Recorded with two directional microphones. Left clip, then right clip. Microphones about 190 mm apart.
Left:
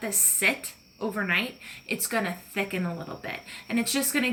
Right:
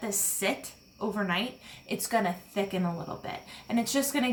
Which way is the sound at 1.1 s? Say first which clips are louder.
Left 5 dB; 15° right (ahead or behind).